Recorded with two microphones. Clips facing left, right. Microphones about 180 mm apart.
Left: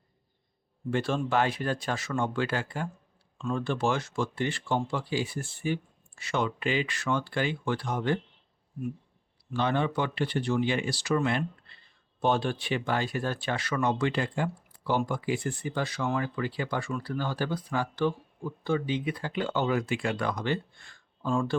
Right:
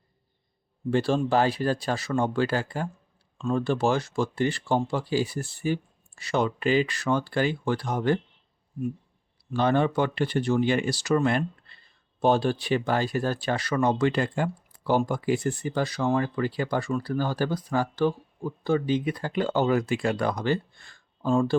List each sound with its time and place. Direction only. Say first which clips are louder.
0.9 s speech: right 5 dB; 35° right (ahead or behind)
9.6 s speech: right 5 dB; 45° right (ahead or behind)